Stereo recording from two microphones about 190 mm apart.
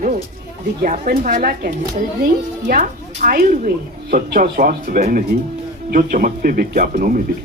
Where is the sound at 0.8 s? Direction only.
50° right (ahead or behind).